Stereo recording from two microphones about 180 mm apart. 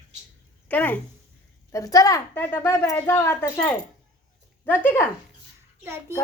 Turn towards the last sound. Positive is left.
turn(degrees=-15)  # may be behind; listen again after turning